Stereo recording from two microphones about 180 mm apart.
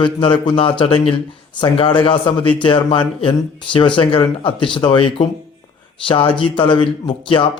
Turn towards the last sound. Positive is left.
turn(degrees=25)  # may be behind; listen again after turning